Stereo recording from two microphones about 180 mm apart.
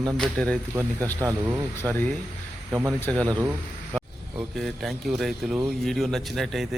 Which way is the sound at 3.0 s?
5° left (ahead or behind).